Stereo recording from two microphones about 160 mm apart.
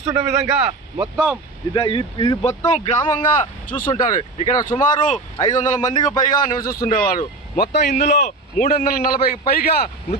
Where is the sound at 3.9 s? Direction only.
30° left (ahead or behind).